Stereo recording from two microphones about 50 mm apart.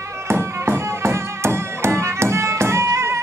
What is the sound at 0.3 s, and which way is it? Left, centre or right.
Music, right.